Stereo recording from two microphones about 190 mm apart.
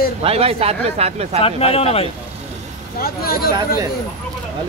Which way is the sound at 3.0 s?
50° left (ahead or behind).